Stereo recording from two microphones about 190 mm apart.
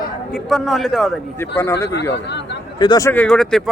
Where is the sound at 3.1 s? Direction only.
5° left (ahead or behind).